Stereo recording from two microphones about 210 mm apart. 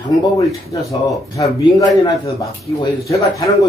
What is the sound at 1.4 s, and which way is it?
A man's voice, 15° left (ahead or behind).